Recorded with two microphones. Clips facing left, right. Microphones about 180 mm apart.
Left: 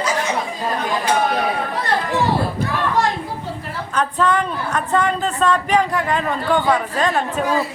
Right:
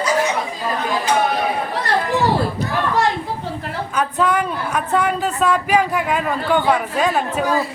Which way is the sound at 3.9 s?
5° right (ahead or behind).